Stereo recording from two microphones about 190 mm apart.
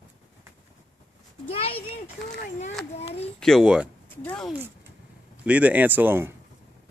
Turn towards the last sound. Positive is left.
turn(degrees=-10)  # may be behind; listen again after turning